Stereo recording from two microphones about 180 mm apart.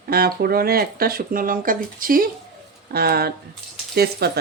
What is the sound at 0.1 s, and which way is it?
Speech, 55° right (ahead or behind).